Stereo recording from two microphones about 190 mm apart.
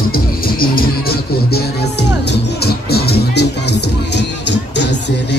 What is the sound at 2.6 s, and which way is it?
Music, 55° left (ahead or behind).